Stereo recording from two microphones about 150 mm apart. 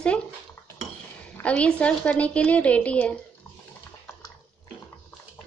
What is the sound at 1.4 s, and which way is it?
A woman's voice, 10° left (ahead or behind).